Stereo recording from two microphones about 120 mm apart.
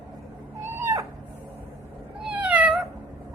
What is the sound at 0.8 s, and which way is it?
Cat, 25° right (ahead or behind).